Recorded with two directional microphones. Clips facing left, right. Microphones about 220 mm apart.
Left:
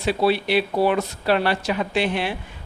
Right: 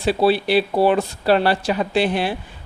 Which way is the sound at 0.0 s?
30° right (ahead or behind).